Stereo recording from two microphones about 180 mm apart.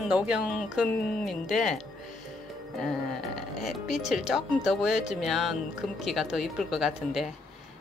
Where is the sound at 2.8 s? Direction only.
Centre (ahead or behind).